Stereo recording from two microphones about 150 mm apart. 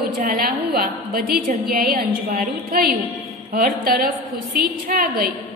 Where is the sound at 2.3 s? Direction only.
90° right.